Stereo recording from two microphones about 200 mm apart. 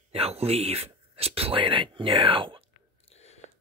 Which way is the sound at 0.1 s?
30° right (ahead or behind).